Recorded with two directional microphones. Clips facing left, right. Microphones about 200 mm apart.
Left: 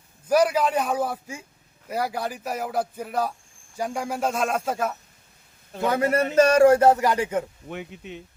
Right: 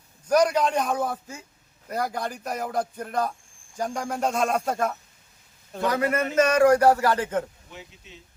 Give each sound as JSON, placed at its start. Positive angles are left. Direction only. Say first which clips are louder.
{"t": 0.3, "sound": "a man's voice", "louder": "left 1 dB", "side_deg": 5}
{"t": 5.9, "sound": "speech", "louder": "left 3 dB", "side_deg": 30}
{"t": 7.7, "sound": "speech", "louder": "left 10 dB", "side_deg": 60}